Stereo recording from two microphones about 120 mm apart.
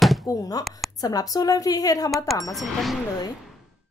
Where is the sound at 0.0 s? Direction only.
Centre (ahead or behind).